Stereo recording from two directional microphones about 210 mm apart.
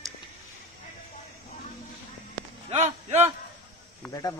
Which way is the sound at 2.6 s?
30° right (ahead or behind).